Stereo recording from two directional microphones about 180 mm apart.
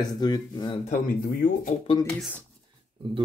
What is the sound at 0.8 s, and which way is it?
Speech, 50° left (ahead or behind).